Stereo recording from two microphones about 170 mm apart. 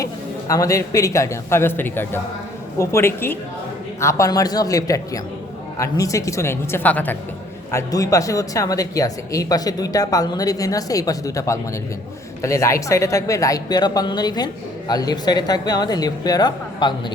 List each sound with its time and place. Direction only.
0.0 s a woman's voice: 20° left (ahead or behind)